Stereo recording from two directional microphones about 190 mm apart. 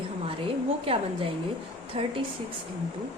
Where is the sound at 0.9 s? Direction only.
30° right (ahead or behind).